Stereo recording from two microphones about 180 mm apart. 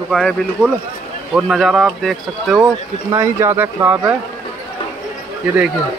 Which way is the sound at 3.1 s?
15° right (ahead or behind).